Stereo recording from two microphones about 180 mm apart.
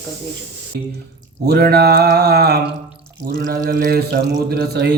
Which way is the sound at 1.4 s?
65° right (ahead or behind).